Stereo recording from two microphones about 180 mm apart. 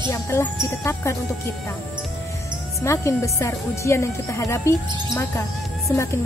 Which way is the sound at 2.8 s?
15° left (ahead or behind).